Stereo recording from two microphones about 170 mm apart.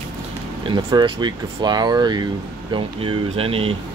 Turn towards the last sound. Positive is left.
turn(degrees=-35)  # may be behind; listen again after turning